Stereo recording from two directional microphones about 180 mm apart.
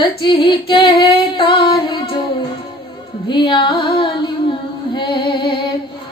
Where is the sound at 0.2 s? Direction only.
25° left (ahead or behind).